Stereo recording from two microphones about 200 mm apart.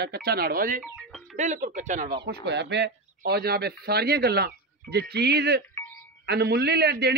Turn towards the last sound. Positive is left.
turn(degrees=-55)  # may be behind; listen again after turning